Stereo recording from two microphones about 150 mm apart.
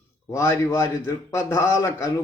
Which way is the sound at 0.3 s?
20° left (ahead or behind).